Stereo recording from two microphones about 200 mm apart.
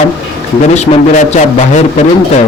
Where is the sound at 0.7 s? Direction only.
35° left (ahead or behind).